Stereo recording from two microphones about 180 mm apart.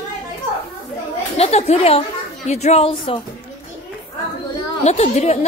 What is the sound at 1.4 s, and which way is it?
Speech, 35° left (ahead or behind).